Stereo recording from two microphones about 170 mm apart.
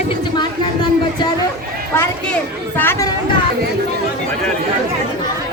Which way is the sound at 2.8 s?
15° left (ahead or behind).